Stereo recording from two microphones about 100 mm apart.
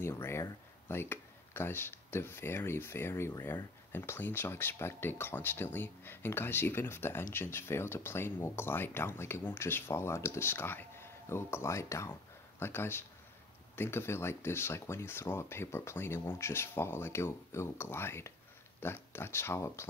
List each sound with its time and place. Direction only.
0.0 s speech: 25° left (ahead or behind)